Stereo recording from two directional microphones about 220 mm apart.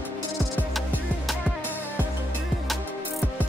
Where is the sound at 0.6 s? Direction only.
Centre (ahead or behind).